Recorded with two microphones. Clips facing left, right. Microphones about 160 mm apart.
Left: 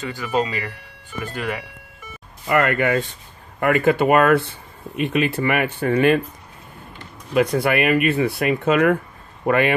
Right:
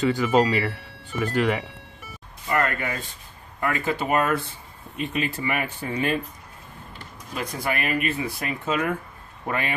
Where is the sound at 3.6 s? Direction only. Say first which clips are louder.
Left 9 dB; 65° left (ahead or behind).